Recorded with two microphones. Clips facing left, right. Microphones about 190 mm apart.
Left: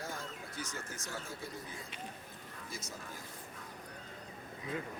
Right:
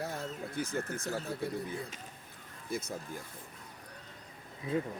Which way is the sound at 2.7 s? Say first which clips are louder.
Right 12 dB; 55° right (ahead or behind).